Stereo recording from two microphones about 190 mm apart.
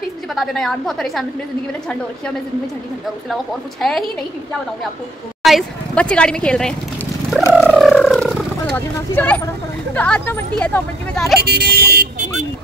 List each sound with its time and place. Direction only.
0.3 s speech: centre (ahead or behind)
3.8 s speech: centre (ahead or behind)
5.4 s speech: centre (ahead or behind)
7.6 s a sound: centre (ahead or behind)
9.9 s speech: 5° left (ahead or behind)
11.4 s speech: 55° right (ahead or behind)